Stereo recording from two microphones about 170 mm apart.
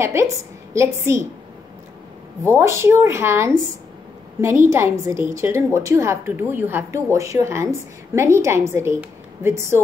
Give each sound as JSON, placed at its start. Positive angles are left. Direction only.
{"t": 0.0, "sound": "a woman's voice", "side_deg": -15}
{"t": 2.4, "sound": "a woman's voice", "side_deg": -15}